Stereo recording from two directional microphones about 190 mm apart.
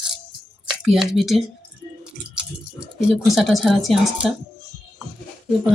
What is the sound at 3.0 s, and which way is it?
Speech, 5° right (ahead or behind).